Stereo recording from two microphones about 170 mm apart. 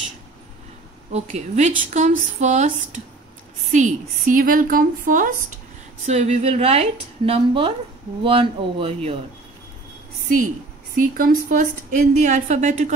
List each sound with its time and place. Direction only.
1.1 s a woman's voice: 45° right (ahead or behind)
6.0 s a woman's voice: 40° right (ahead or behind)
11.0 s a woman's voice: 60° right (ahead or behind)